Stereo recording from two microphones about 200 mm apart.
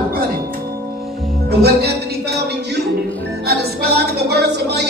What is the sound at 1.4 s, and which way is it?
Music, 55° right (ahead or behind).